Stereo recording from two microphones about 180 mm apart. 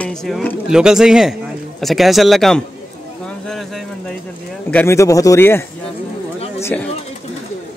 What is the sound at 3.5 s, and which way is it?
Vehicle, centre (ahead or behind).